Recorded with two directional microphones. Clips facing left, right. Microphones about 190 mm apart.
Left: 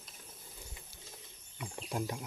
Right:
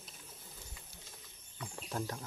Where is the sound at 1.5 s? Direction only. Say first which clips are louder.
Left 2 dB; 15° left (ahead or behind).